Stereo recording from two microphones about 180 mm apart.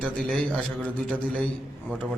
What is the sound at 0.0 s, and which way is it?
Speech, 5° left (ahead or behind).